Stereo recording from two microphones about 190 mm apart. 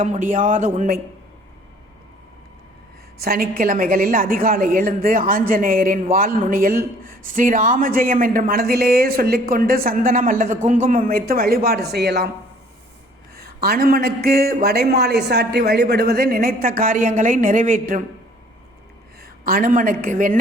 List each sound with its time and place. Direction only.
0.0 s a woman's voice: 40° right (ahead or behind)
3.2 s a woman's voice: 50° right (ahead or behind)
13.3 s a woman's voice: 50° right (ahead or behind)
19.2 s a woman's voice: 50° right (ahead or behind)